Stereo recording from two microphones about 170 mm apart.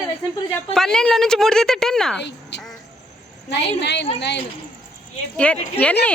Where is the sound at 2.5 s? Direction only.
90° left.